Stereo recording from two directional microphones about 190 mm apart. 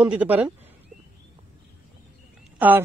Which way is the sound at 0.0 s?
5° right (ahead or behind).